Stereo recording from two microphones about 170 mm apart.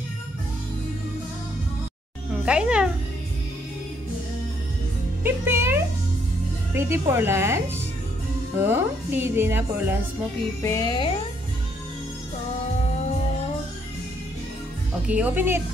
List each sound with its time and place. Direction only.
2.4 s speech: 5° right (ahead or behind)
5.2 s music: 15° right (ahead or behind)
6.7 s a woman's voice: 15° right (ahead or behind)
10.6 s music: 20° left (ahead or behind)
15.0 s a woman's voice: 10° right (ahead or behind)